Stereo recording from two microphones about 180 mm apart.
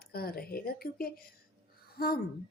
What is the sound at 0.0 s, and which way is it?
A woman's voice, 55° left (ahead or behind).